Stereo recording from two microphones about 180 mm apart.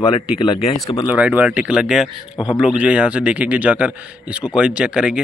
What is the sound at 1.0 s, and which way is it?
Speech, 10° right (ahead or behind).